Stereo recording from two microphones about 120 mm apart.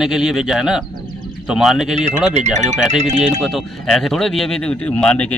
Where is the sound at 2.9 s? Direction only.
75° right (ahead or behind).